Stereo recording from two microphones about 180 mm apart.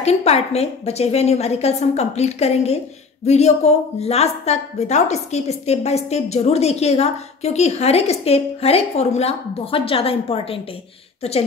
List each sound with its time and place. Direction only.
0.0 s a woman's voice: 35° left (ahead or behind)